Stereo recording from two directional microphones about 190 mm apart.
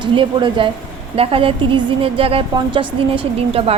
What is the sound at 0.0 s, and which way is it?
A woman's voice, 25° right (ahead or behind).